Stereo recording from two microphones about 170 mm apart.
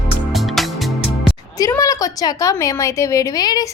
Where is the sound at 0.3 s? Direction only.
Centre (ahead or behind).